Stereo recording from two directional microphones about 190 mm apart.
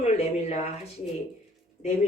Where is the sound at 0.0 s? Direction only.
35° left (ahead or behind).